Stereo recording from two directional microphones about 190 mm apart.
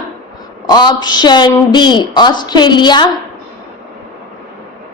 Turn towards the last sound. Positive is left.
turn(degrees=25)  # may be behind; listen again after turning